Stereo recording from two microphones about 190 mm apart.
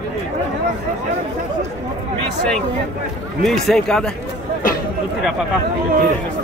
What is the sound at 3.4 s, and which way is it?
Speech, centre (ahead or behind).